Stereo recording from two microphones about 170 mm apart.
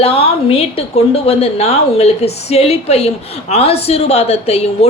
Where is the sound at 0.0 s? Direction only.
35° left (ahead or behind).